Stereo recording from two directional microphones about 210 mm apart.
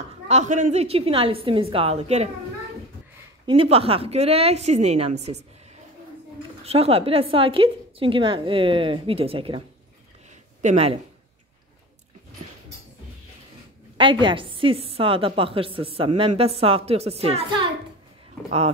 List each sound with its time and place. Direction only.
0.3 s a woman's voice: 35° right (ahead or behind)
3.4 s a woman's voice: 25° right (ahead or behind)
6.6 s a woman's voice: 30° right (ahead or behind)
10.6 s speech: 30° right (ahead or behind)
14.2 s a woman's voice: 25° right (ahead or behind)